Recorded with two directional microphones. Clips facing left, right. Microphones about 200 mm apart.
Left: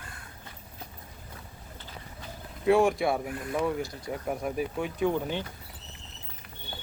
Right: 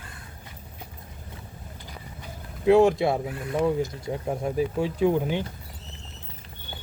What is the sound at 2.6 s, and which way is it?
Speech, 25° right (ahead or behind).